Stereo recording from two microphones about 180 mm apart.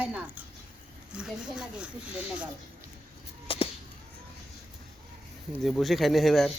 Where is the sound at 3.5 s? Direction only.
30° left (ahead or behind).